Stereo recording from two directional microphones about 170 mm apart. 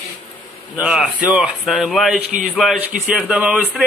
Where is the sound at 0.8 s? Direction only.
5° right (ahead or behind).